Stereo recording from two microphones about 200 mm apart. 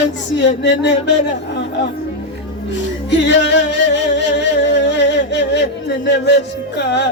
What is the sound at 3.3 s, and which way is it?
Music, 60° left (ahead or behind).